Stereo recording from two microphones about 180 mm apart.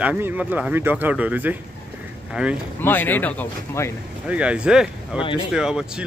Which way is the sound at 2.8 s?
10° left (ahead or behind).